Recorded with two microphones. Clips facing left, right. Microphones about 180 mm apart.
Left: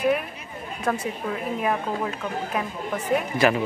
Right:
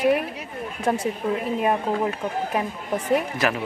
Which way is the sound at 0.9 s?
25° right (ahead or behind).